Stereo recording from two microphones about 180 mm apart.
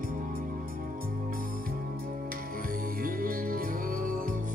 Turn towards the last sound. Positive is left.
turn(degrees=-50)  # may be behind; listen again after turning